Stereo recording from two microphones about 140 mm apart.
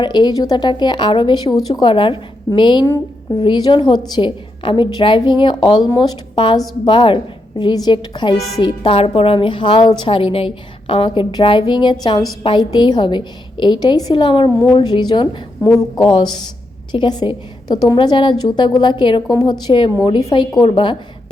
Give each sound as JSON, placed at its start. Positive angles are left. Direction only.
{"t": 0.0, "sound": "a woman's voice", "side_deg": 35}